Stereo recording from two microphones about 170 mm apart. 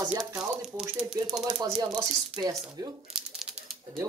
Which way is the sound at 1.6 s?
20° right (ahead or behind).